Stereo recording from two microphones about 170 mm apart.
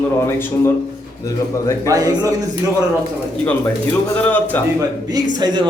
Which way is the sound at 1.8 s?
20° right (ahead or behind).